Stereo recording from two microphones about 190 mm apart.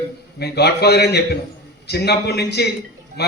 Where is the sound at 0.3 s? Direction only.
60° left (ahead or behind).